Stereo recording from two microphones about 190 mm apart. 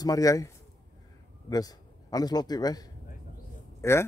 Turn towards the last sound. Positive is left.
turn(degrees=15)  # may be behind; listen again after turning